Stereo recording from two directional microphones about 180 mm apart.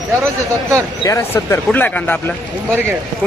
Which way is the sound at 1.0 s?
15° left (ahead or behind).